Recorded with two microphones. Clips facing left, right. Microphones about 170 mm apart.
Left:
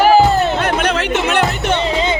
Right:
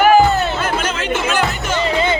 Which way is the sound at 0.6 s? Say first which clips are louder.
Left 4 dB; 65° left (ahead or behind).